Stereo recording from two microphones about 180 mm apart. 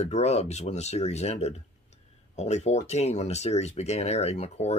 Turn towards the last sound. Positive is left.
turn(degrees=35)  # may be behind; listen again after turning